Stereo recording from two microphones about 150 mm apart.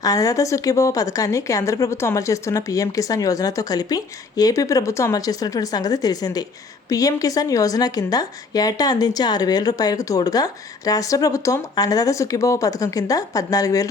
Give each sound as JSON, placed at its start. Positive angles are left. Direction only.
{"t": 0.0, "sound": "a woman's voice", "side_deg": 25}